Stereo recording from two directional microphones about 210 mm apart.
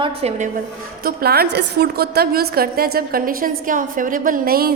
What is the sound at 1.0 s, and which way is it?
A woman's voice, 45° right (ahead or behind).